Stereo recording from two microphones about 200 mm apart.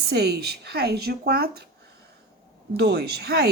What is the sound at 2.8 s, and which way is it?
Speech, 55° right (ahead or behind).